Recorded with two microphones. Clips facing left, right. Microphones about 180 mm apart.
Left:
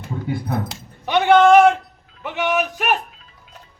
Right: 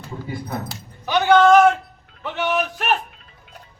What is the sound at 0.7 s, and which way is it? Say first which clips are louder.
Speech: right 1 dB; 20° left (ahead or behind).